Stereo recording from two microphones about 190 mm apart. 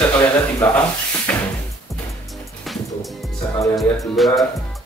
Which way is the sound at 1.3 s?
10° left (ahead or behind).